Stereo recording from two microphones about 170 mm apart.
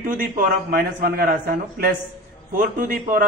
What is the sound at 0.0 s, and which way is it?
A man's voice, 55° right (ahead or behind).